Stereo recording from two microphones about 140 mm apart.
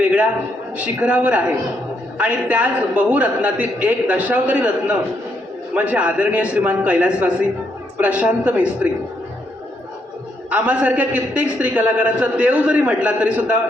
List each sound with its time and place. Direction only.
1.0 s a man's voice: 10° right (ahead or behind)
10.5 s a man's voice: 10° right (ahead or behind)